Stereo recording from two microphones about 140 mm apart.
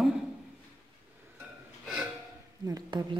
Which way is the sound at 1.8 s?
5° right (ahead or behind).